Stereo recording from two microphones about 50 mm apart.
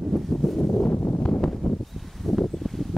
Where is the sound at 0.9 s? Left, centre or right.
Left.